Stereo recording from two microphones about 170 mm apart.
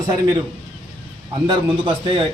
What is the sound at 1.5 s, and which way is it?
Speech, 30° right (ahead or behind).